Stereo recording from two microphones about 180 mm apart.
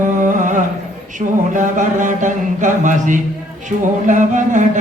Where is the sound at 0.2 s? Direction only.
45° right (ahead or behind).